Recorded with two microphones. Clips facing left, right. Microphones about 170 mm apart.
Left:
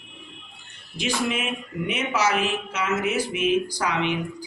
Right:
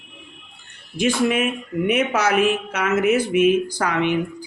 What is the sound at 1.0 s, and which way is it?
Speech, 55° right (ahead or behind).